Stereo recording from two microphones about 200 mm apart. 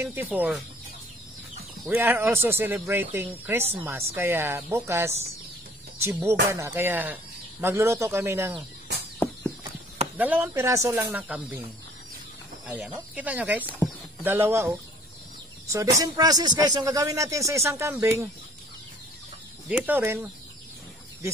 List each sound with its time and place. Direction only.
0.0 s a man's voice: 10° right (ahead or behind)
1.9 s a man's voice: 10° right (ahead or behind)
10.1 s a man's voice: 10° right (ahead or behind)
12.6 s a man's voice: 5° right (ahead or behind)
15.7 s a man's voice: 15° right (ahead or behind)
19.7 s a man's voice: 10° right (ahead or behind)